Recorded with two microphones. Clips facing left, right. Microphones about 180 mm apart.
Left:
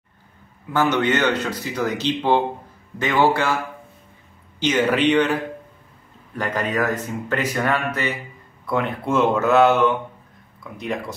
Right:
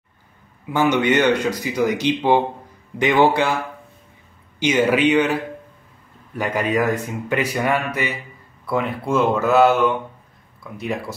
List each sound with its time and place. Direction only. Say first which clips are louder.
0.7 s speech: right 2 dB; 15° right (ahead or behind)
4.6 s speech: right 2 dB; 10° right (ahead or behind)
10.8 s speech: right 1 dB; 5° right (ahead or behind)